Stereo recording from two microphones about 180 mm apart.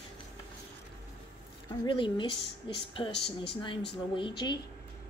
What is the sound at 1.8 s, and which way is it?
A woman's voice, 25° left (ahead or behind).